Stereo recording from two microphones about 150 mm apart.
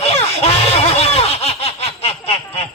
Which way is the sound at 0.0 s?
45° left (ahead or behind).